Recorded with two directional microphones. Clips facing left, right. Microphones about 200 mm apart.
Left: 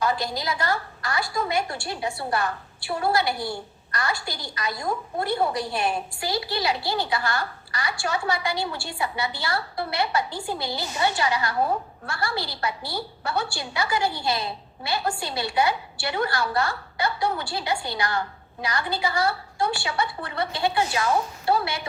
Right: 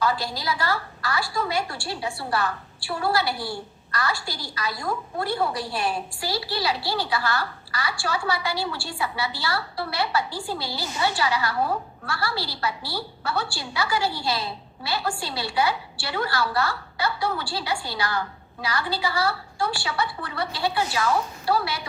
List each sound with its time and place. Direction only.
0.0 s a woman's voice: 20° left (ahead or behind)